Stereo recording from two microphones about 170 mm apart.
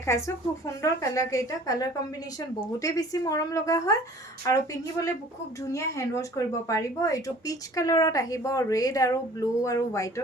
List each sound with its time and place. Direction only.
0.0 s speech: 15° left (ahead or behind)